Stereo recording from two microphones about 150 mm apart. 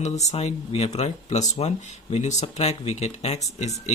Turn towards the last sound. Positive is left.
turn(degrees=45)  # may be behind; listen again after turning